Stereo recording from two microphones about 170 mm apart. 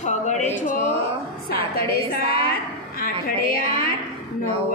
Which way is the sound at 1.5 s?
65° left (ahead or behind).